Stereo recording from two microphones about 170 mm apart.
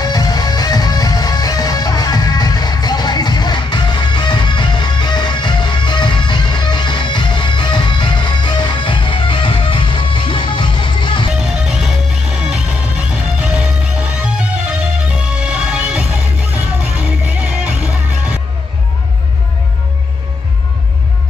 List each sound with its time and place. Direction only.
0.0 s music: 25° left (ahead or behind)
11.8 s music: 5° right (ahead or behind)